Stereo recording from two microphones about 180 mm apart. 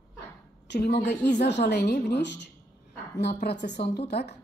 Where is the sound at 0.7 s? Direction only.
70° left (ahead or behind).